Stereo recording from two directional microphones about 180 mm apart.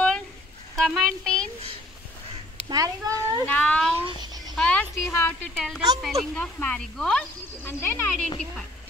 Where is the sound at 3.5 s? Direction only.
5° left (ahead or behind).